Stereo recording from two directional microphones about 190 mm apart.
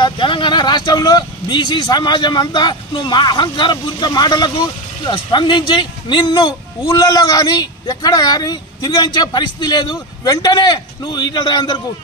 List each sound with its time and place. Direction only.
0.0 s speech: 25° left (ahead or behind)